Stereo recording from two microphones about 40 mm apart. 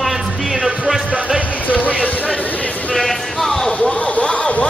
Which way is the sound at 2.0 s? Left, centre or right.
Left.